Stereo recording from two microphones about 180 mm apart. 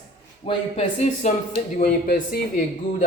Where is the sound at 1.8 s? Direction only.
50° left (ahead or behind).